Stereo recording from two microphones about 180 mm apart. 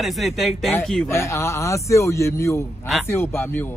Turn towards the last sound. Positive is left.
turn(degrees=10)  # may be behind; listen again after turning